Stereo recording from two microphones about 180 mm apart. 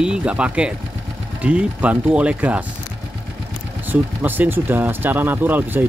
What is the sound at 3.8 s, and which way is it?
Speech, 10° right (ahead or behind).